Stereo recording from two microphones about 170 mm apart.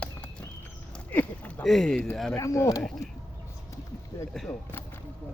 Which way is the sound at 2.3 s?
15° left (ahead or behind).